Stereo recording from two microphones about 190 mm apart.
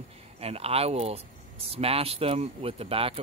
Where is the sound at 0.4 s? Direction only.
30° right (ahead or behind).